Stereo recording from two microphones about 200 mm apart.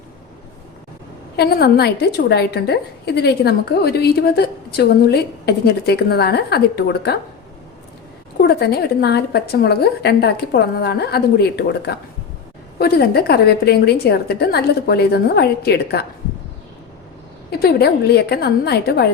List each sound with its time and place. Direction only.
1.4 s a woman's voice: 55° left (ahead or behind)
8.4 s a woman's voice: 50° left (ahead or behind)
17.5 s a woman's voice: 50° left (ahead or behind)